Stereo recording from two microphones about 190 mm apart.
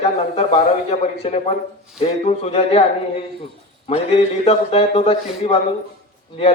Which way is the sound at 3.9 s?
30° left (ahead or behind).